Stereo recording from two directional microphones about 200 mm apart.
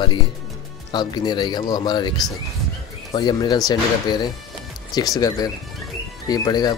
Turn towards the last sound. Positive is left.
turn(degrees=20)  # may be behind; listen again after turning